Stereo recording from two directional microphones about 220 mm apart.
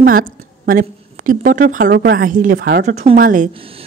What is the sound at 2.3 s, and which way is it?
Speech, 40° right (ahead or behind).